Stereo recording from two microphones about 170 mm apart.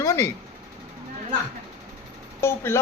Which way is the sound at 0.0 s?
15° left (ahead or behind).